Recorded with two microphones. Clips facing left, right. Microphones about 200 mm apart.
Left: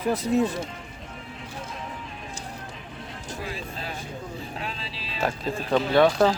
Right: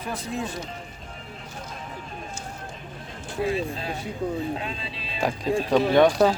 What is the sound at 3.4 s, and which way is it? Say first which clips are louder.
Speech: right 10 dB; 25° right (ahead or behind).